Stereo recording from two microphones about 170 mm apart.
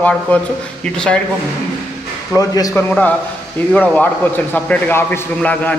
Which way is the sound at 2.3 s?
20° left (ahead or behind).